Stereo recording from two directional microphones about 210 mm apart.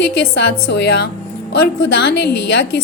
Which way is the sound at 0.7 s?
55° left (ahead or behind).